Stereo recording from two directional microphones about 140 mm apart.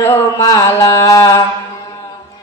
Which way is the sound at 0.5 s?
25° left (ahead or behind).